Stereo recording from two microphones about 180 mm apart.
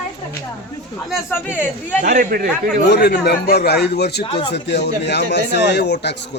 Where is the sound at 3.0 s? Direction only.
60° left (ahead or behind).